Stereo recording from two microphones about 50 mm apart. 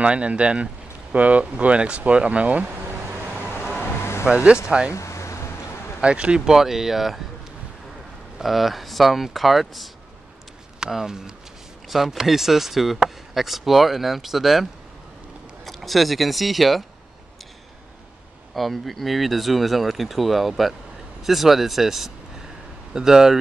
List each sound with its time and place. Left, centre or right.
0.0 s speech: right
3.3 s vehicle: right
3.8 s vehicle: left
4.6 s speech: centre
4.9 s a sound: left
5.9 s speech: right
6.4 s speech: centre
8.4 s speech: centre
18.5 s speech: centre